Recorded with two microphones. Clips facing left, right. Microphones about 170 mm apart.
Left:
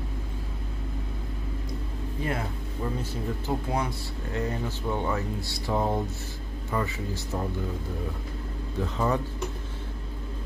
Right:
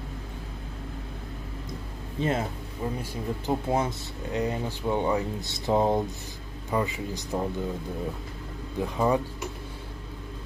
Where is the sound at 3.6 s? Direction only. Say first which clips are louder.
Right 3 dB; 25° right (ahead or behind).